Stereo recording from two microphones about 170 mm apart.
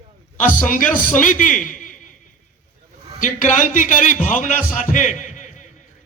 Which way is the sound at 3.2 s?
50° left (ahead or behind).